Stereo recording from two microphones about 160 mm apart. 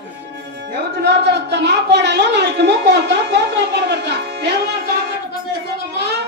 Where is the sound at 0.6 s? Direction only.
90° right.